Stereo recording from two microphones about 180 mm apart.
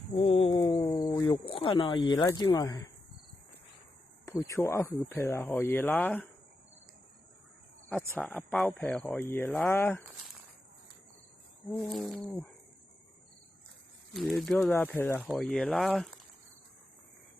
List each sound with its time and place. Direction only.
0.1 s a sound: 30° left (ahead or behind)
0.5 s speech: 25° left (ahead or behind)
4.3 s speech: 15° left (ahead or behind)
7.9 s speech: 5° left (ahead or behind)
11.7 s speech: 5° left (ahead or behind)
14.1 s speech: centre (ahead or behind)